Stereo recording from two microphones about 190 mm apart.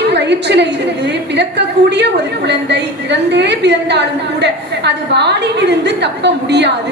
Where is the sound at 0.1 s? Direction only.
65° right (ahead or behind).